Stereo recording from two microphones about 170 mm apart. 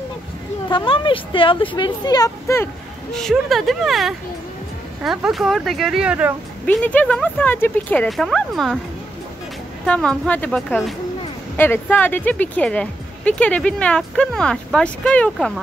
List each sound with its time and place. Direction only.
0.7 s speech: 30° left (ahead or behind)
3.1 s speech: 5° left (ahead or behind)
6.6 s speech: 5° left (ahead or behind)
9.8 s speech: 5° left (ahead or behind)